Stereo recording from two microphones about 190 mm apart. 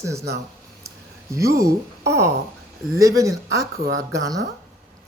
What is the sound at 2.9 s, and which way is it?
Speech, 15° right (ahead or behind).